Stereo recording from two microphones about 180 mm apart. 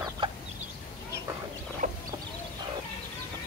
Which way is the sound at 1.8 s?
50° right (ahead or behind).